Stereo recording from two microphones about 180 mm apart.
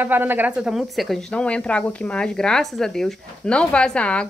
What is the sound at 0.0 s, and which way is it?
Speech, 10° right (ahead or behind).